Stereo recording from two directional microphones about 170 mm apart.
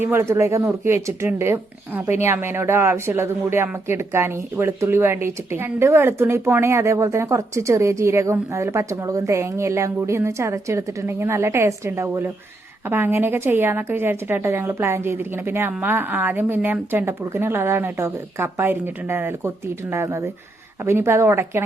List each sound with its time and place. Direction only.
0.0 s speech: 15° right (ahead or behind)